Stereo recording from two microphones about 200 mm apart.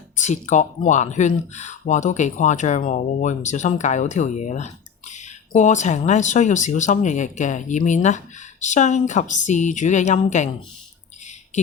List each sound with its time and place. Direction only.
0.2 s speech: 35° left (ahead or behind)